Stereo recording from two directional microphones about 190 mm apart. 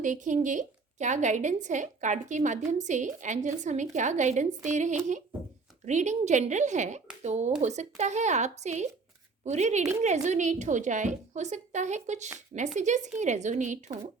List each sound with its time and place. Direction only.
0.0 s a woman's voice: 40° right (ahead or behind)